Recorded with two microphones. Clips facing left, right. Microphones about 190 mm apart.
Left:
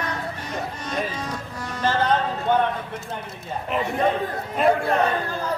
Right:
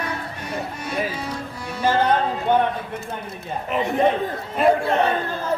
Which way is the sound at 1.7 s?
10° right (ahead or behind).